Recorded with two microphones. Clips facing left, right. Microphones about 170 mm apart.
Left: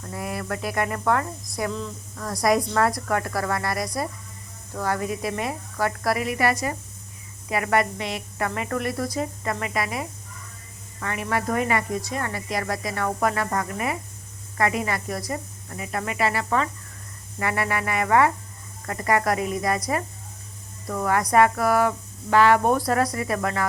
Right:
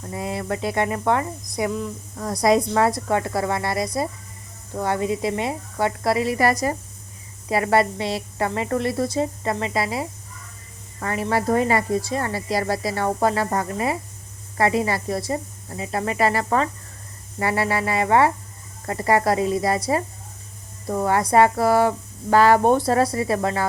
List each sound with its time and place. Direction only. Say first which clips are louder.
0.1 s a woman's voice: right 3 dB; 25° right (ahead or behind)